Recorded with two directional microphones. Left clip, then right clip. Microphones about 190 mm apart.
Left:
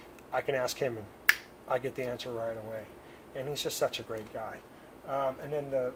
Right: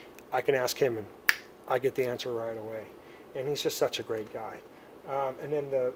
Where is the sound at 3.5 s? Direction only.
50° right (ahead or behind).